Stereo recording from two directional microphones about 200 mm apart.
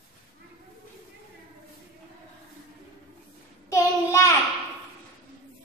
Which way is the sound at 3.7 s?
15° left (ahead or behind).